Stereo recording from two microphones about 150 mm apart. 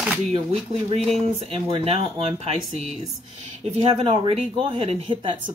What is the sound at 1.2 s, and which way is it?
Speech, 40° right (ahead or behind).